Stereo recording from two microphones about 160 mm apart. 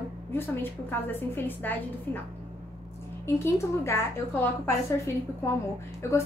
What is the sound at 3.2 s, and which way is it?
A woman's voice, 15° left (ahead or behind).